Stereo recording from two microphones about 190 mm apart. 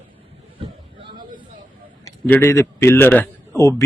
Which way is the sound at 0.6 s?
25° right (ahead or behind).